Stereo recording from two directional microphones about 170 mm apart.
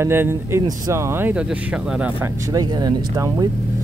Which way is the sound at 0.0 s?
15° right (ahead or behind).